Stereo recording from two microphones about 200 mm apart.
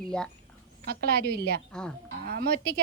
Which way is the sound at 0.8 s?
50° right (ahead or behind).